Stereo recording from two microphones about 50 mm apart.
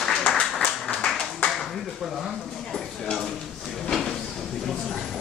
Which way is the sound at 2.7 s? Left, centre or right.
Centre.